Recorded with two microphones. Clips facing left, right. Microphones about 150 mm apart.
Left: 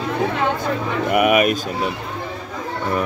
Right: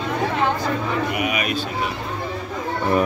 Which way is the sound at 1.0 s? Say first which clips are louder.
Left 8 dB; 55° left (ahead or behind).